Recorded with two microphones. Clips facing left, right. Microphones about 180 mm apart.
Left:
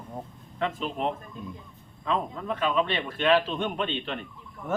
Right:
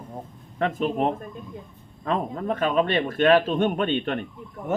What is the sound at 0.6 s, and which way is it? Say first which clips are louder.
A man's voice: right 6 dB; 45° right (ahead or behind).